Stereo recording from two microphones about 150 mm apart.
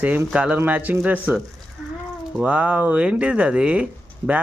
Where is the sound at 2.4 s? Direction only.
10° right (ahead or behind).